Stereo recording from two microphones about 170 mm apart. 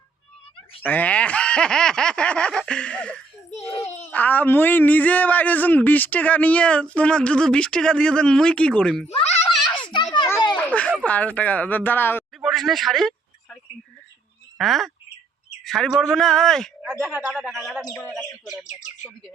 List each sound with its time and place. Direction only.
0.8 s speech: 10° left (ahead or behind)
3.5 s a sound: 35° left (ahead or behind)
4.1 s a man's voice: 10° left (ahead or behind)
9.0 s children playing: 40° left (ahead or behind)
10.6 s a sound: 10° left (ahead or behind)
11.0 s a man's voice: 10° left (ahead or behind)
12.4 s a sound: centre (ahead or behind)
14.6 s a man's voice: centre (ahead or behind)
16.9 s speech: 10° right (ahead or behind)